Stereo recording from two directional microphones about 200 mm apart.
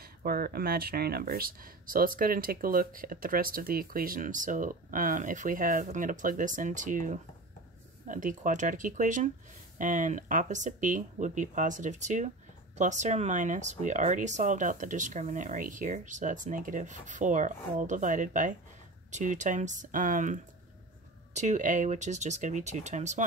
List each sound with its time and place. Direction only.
0.0 s speech: 50° right (ahead or behind)
21.4 s speech: 40° right (ahead or behind)